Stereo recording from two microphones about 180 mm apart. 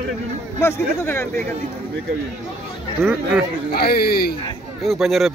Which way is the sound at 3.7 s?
60° left (ahead or behind).